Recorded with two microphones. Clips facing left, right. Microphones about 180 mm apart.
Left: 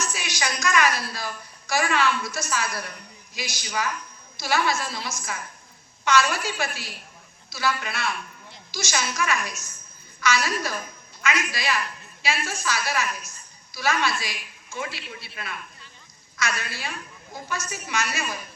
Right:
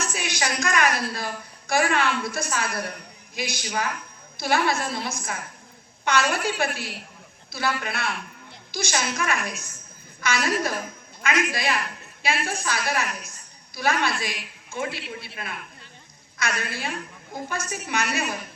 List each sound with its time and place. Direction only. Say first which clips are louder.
0.0 s a woman's voice: right 2 dB; 55° right (ahead or behind)